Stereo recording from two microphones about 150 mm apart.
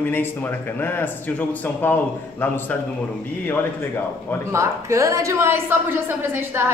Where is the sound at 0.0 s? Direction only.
15° left (ahead or behind).